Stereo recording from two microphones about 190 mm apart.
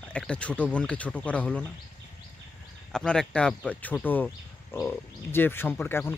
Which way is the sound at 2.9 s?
5° left (ahead or behind).